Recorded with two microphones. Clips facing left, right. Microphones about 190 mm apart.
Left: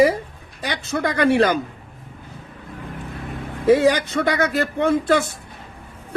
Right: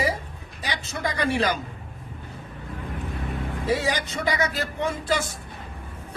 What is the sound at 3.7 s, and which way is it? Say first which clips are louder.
Speech: left 11 dB; 55° left (ahead or behind).